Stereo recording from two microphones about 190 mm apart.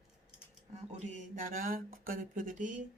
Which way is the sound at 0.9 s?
45° right (ahead or behind).